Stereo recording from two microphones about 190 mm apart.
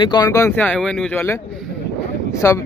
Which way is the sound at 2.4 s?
15° left (ahead or behind).